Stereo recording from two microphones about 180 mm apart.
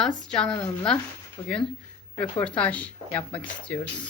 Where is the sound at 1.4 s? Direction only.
30° left (ahead or behind).